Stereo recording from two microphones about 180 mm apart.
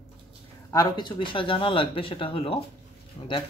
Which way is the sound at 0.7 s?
20° left (ahead or behind).